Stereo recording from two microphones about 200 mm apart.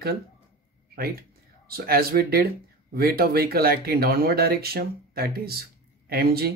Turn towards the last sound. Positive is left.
turn(degrees=-50)  # may be behind; listen again after turning